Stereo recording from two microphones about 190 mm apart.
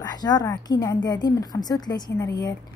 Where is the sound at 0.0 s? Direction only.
20° left (ahead or behind).